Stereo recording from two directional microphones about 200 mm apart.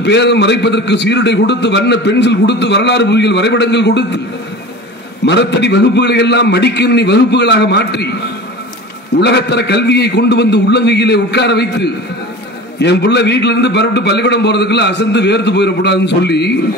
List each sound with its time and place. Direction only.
0.0 s a man's voice: 60° left (ahead or behind)
5.2 s a man's voice: 60° left (ahead or behind)
9.2 s a man's voice: 60° left (ahead or behind)